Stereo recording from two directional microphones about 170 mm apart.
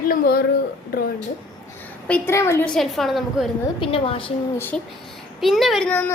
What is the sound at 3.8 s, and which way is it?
Speech, 30° left (ahead or behind).